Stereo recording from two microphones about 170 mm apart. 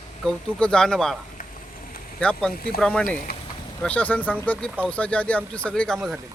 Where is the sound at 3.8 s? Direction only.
10° left (ahead or behind).